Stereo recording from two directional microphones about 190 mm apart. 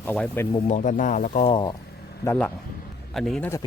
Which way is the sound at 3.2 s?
Centre (ahead or behind).